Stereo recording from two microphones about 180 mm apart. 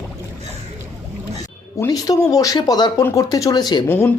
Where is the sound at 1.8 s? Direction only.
20° left (ahead or behind).